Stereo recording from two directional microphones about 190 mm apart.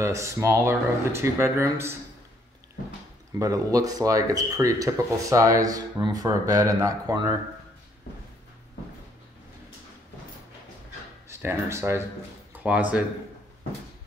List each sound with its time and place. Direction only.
0.0 s speech: 15° right (ahead or behind)
3.3 s speech: 20° right (ahead or behind)
11.2 s speech: 15° right (ahead or behind)